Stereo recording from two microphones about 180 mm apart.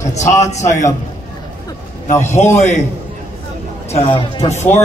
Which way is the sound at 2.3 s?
40° left (ahead or behind).